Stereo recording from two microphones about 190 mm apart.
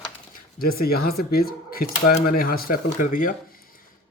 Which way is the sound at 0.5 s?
50° left (ahead or behind).